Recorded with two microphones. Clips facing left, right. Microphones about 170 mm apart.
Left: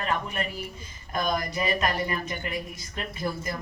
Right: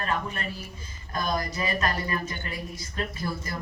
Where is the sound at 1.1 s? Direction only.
20° left (ahead or behind).